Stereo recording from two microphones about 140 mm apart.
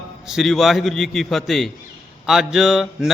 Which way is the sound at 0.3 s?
Centre (ahead or behind).